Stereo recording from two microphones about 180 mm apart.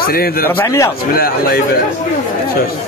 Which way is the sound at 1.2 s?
55° left (ahead or behind).